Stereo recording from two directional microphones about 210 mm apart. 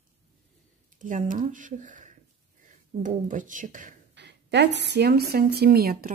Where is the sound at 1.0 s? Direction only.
40° right (ahead or behind).